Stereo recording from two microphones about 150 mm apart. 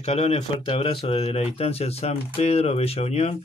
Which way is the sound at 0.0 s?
40° left (ahead or behind).